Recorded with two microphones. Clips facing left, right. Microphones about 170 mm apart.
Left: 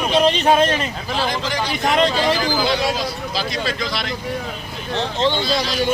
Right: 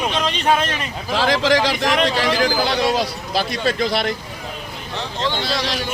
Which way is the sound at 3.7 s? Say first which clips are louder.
Right 5 dB; 55° right (ahead or behind).